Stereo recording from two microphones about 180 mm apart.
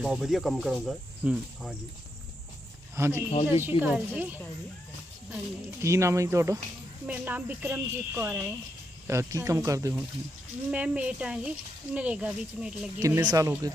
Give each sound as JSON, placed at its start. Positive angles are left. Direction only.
{"t": 0.0, "sound": "speech", "side_deg": -5}
{"t": 2.9, "sound": "speech", "side_deg": -15}
{"t": 5.8, "sound": "speech", "side_deg": -15}
{"t": 10.7, "sound": "speech", "side_deg": -5}
{"t": 13.0, "sound": "speech", "side_deg": -15}